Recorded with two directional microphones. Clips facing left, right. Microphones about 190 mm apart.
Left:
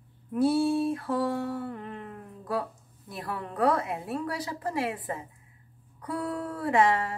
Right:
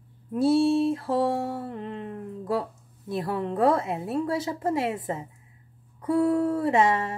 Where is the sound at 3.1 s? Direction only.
25° right (ahead or behind).